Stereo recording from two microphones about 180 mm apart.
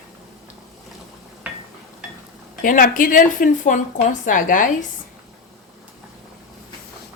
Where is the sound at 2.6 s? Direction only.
50° left (ahead or behind).